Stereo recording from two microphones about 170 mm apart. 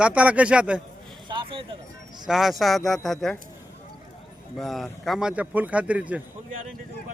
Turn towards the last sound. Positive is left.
turn(degrees=-10)  # may be behind; listen again after turning